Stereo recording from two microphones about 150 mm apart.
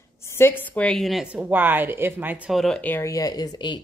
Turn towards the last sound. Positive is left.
turn(degrees=30)  # may be behind; listen again after turning